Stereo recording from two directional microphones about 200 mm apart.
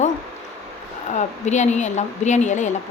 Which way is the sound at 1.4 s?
35° left (ahead or behind).